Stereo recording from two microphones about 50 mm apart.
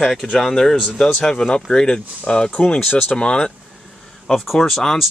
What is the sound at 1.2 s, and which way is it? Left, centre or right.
Speech, centre.